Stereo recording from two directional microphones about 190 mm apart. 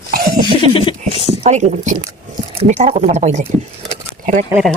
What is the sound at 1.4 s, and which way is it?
Speech, 40° right (ahead or behind).